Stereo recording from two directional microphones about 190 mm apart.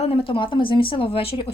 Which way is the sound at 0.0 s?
30° left (ahead or behind).